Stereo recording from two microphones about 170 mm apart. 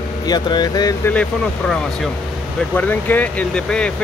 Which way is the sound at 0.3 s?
25° left (ahead or behind).